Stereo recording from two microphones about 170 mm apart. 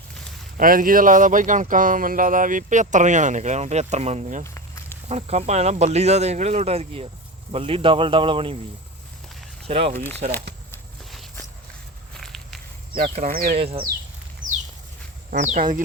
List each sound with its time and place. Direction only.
0.5 s speech: 55° right (ahead or behind)
4.4 s walk: 15° left (ahead or behind)
5.0 s speech: 40° right (ahead or behind)
9.6 s speech: 35° right (ahead or behind)
12.1 s walk: centre (ahead or behind)
13.2 s speech: 60° right (ahead or behind)
13.6 s speech: 35° right (ahead or behind)
15.3 s speech: 45° right (ahead or behind)